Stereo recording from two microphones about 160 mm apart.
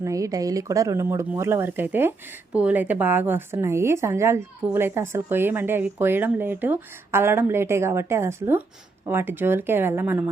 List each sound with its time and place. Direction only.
0.0 s speech: 20° right (ahead or behind)